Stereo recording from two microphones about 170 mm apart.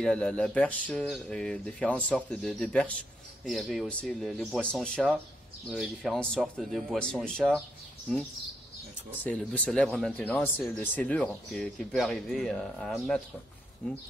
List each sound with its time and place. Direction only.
0.0 s speech: 5° left (ahead or behind)
9.6 s speech: 5° left (ahead or behind)